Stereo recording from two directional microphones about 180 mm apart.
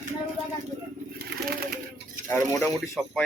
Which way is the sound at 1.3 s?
65° right (ahead or behind).